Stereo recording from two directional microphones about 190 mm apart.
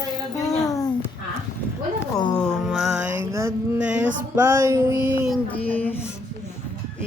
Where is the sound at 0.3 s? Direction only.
20° left (ahead or behind).